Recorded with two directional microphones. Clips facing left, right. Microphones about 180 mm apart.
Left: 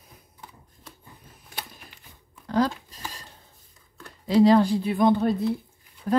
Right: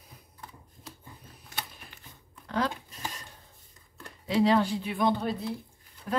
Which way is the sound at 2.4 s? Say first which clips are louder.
Left 6 dB; 35° left (ahead or behind).